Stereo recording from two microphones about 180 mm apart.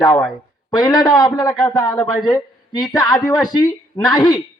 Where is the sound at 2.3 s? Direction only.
25° left (ahead or behind).